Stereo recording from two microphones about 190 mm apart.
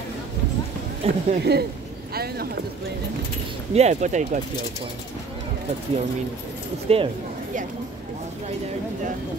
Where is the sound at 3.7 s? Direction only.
35° right (ahead or behind).